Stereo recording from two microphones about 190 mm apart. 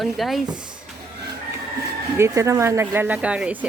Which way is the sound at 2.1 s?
15° right (ahead or behind).